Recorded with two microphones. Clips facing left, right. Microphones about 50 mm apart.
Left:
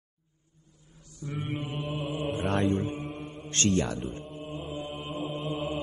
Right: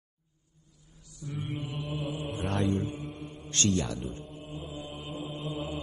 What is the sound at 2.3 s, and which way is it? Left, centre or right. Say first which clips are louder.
Mantra: left 2 dB; left.